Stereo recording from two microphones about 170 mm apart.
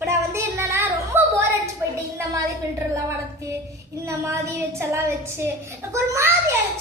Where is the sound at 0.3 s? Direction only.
15° right (ahead or behind).